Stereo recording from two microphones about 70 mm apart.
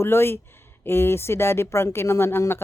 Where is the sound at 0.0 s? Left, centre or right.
Left.